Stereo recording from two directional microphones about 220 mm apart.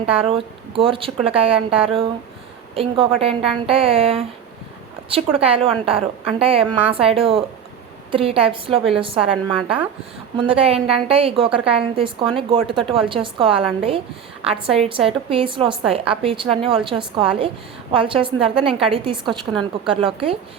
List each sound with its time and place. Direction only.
0.0 s a woman's voice: 25° right (ahead or behind)
19.5 s speech: 5° right (ahead or behind)